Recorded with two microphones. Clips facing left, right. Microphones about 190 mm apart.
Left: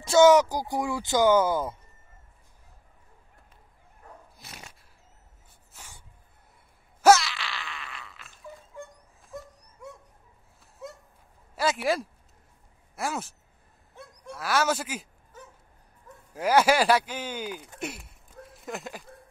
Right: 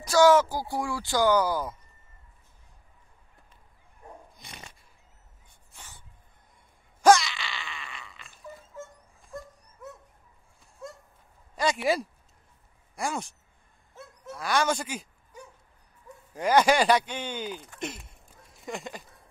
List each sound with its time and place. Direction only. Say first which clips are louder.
0.0 s speech: left 2 dB; 25° left (ahead or behind)
4.4 s dog: even; 5° left (ahead or behind)
7.0 s a sound: even; 5° left (ahead or behind)
10.6 s goose: left 1 dB; centre (ahead or behind)
11.5 s speech: even; centre (ahead or behind)
13.9 s dog: even; centre (ahead or behind)
16.3 s speech: even; 5° left (ahead or behind)
18.5 s a sound: even; centre (ahead or behind)